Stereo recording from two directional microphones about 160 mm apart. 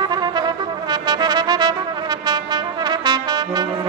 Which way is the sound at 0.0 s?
25° right (ahead or behind).